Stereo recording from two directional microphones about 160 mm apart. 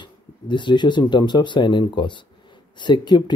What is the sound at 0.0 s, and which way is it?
Speech, 30° left (ahead or behind).